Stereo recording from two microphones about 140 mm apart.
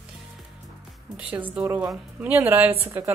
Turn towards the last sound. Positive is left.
turn(degrees=-20)  # may be behind; listen again after turning